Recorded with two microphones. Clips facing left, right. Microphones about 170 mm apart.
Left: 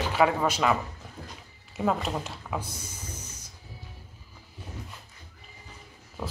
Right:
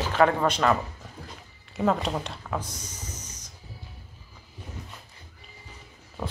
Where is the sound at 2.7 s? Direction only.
10° left (ahead or behind).